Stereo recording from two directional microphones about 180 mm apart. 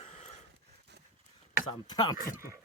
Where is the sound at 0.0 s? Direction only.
40° left (ahead or behind).